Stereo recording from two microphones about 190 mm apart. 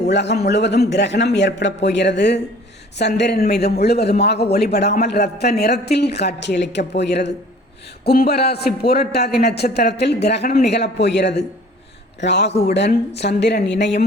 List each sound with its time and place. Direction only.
0.1 s a man's voice: 65° left (ahead or behind)
8.0 s a man's voice: 55° left (ahead or behind)